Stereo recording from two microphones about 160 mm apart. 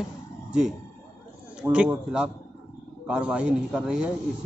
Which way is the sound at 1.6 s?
10° right (ahead or behind).